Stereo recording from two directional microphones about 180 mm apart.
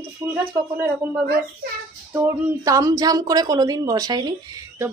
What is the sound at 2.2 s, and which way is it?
A woman's voice, 20° right (ahead or behind).